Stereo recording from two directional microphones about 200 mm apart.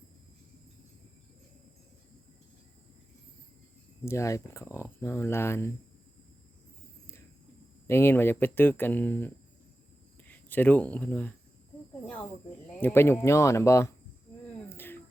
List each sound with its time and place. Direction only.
4.0 s speech: 15° left (ahead or behind)
7.9 s speech: 10° left (ahead or behind)
14.7 s a sound: 10° left (ahead or behind)